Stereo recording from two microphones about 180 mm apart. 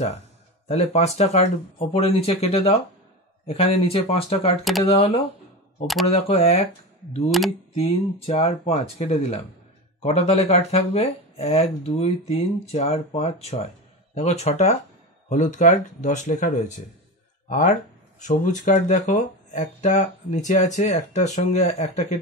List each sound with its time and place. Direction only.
0.7 s speech: 35° left (ahead or behind)
7.2 s speech: centre (ahead or behind)
7.7 s speech: 35° left (ahead or behind)